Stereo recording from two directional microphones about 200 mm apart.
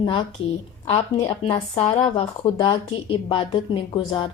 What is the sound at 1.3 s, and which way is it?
Speech, 25° left (ahead or behind).